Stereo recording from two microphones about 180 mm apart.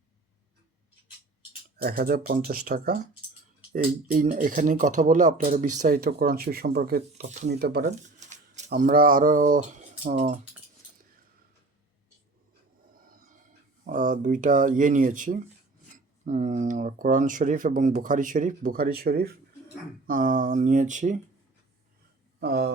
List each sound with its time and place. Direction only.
1.8 s speech: 55° right (ahead or behind)
4.3 s speech: 45° right (ahead or behind); by 7.9 s 65° right (ahead or behind)
7.9 s shuffling cards: 40° right (ahead or behind)
8.7 s speech: 50° right (ahead or behind)
13.1 s a sound: 45° right (ahead or behind)
13.8 s speech: 50° right (ahead or behind)
22.4 s speech: 65° right (ahead or behind)